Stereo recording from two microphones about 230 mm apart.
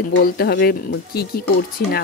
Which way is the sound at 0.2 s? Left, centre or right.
Left.